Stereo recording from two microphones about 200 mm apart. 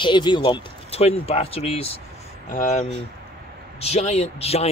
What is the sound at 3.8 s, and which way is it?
Speech, 30° left (ahead or behind).